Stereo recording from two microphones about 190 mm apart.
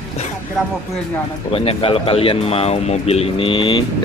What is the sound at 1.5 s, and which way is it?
Speech, 30° left (ahead or behind).